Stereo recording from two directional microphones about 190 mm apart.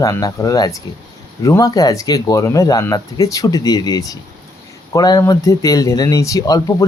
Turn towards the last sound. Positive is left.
turn(degrees=20)  # may be behind; listen again after turning